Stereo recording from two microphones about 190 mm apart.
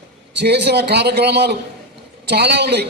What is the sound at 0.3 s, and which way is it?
A man's voice, 60° right (ahead or behind).